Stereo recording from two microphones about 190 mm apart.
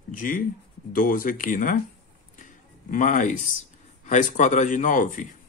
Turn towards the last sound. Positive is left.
turn(degrees=40)  # may be behind; listen again after turning